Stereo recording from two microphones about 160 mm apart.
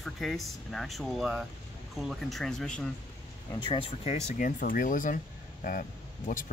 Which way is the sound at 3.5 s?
30° left (ahead or behind).